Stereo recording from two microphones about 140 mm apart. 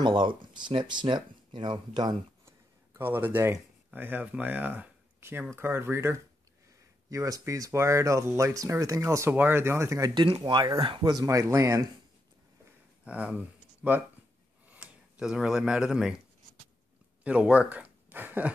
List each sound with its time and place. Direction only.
0.0 s speech: 35° right (ahead or behind)
2.9 s speech: 15° right (ahead or behind)
10.2 s speech: 35° right (ahead or behind)
13.0 s speech: 10° right (ahead or behind)
17.2 s a sound: 10° right (ahead or behind)